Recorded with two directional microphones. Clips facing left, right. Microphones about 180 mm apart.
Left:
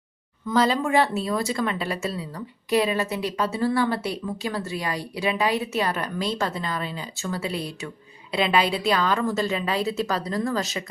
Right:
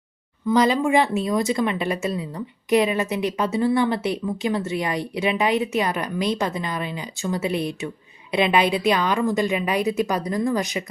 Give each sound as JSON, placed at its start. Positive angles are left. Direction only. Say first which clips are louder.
{"t": 0.4, "sound": "a woman's voice", "louder": "right 3 dB", "side_deg": -15}